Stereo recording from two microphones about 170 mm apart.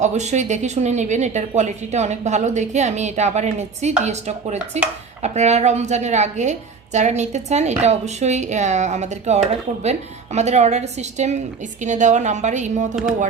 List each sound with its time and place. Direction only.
0.0 s a woman's voice: 45° right (ahead or behind)